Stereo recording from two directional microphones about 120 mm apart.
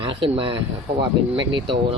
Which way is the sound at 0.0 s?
45° right (ahead or behind).